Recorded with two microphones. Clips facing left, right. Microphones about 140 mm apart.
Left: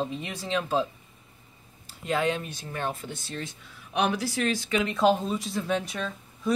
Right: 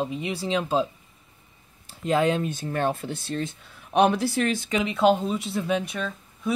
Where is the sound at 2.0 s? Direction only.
35° right (ahead or behind).